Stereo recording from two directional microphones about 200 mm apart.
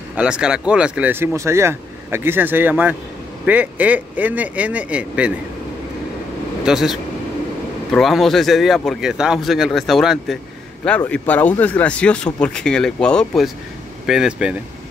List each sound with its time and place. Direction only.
0.1 s speech: 5° right (ahead or behind)
6.6 s speech: centre (ahead or behind)